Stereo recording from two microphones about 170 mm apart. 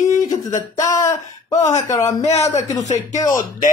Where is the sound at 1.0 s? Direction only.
20° left (ahead or behind).